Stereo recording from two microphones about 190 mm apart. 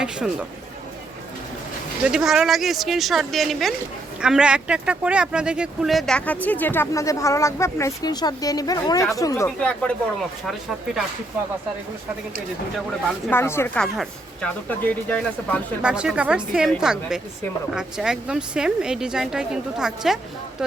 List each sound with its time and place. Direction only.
0.0 s speech: 5° right (ahead or behind)
2.0 s speech: 5° right (ahead or behind)
13.3 s speech: 15° left (ahead or behind)
15.8 s speech: 5° right (ahead or behind)